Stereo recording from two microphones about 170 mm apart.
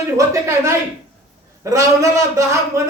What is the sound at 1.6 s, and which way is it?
Speech, 20° right (ahead or behind).